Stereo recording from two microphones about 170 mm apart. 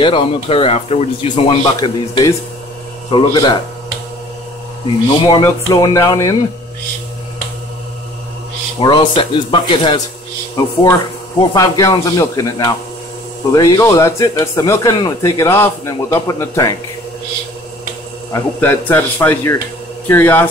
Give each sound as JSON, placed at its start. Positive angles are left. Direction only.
{"t": 0.0, "sound": "a man's voice", "side_deg": 30}
{"t": 5.3, "sound": "a man's voice", "side_deg": 25}
{"t": 8.7, "sound": "a man's voice", "side_deg": 30}
{"t": 18.3, "sound": "a man's voice", "side_deg": 15}